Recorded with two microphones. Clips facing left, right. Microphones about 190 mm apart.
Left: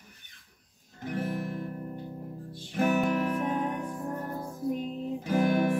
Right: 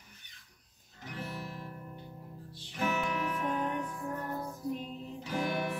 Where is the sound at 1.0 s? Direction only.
50° left (ahead or behind).